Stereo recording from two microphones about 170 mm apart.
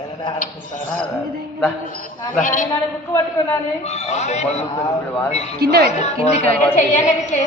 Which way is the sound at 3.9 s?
40° left (ahead or behind).